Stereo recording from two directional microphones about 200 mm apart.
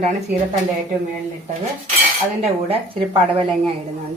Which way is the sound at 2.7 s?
30° right (ahead or behind).